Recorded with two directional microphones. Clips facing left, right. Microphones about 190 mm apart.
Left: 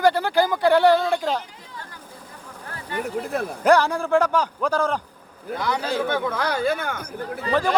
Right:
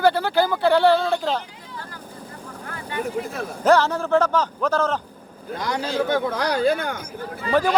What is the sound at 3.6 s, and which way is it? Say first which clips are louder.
Speech: right 1 dB; 15° left (ahead or behind).